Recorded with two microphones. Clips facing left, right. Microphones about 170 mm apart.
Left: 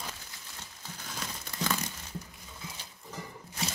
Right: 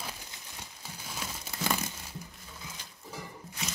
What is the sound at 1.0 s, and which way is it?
Crumpling, 10° right (ahead or behind).